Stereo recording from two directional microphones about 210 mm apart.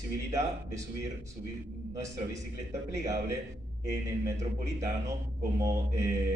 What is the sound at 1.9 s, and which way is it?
Speech, 15° right (ahead or behind).